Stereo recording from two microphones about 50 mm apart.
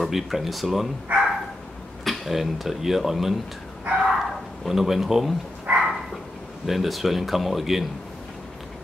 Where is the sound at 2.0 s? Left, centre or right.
Centre.